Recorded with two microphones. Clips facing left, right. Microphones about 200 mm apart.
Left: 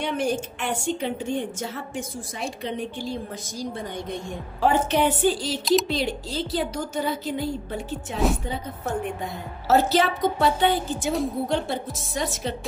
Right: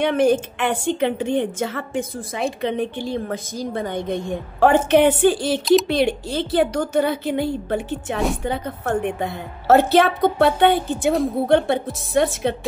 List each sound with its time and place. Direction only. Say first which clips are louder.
0.0 s a woman's voice: right 8 dB; 90° right
0.3 s a woman's voice: right 7 dB; 60° right (ahead or behind); by 1.9 s 80° right
2.1 s a woman's voice: right 7 dB; 65° right (ahead or behind)